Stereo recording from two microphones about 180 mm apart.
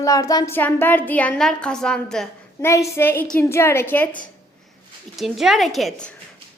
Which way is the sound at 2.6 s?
15° left (ahead or behind).